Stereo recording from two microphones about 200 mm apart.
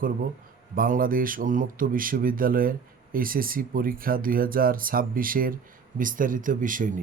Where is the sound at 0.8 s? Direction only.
45° right (ahead or behind).